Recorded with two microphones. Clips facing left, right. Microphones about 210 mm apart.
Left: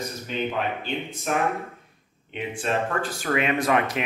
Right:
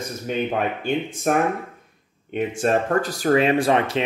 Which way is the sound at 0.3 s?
50° right (ahead or behind).